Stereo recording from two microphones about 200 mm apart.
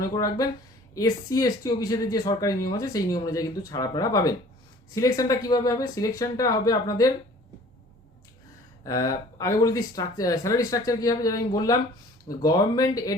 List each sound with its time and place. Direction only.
0.0 s speech: 15° left (ahead or behind)
8.8 s speech: 15° left (ahead or behind)